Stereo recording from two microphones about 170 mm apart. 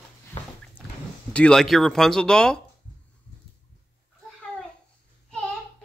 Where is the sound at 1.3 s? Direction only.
5° left (ahead or behind).